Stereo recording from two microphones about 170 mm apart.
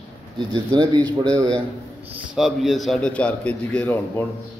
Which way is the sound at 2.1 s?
Centre (ahead or behind).